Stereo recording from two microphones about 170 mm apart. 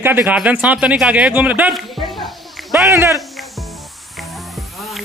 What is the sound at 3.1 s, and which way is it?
Music, centre (ahead or behind).